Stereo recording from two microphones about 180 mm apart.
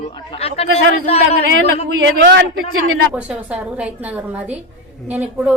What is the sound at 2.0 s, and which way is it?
Speech, 90° right.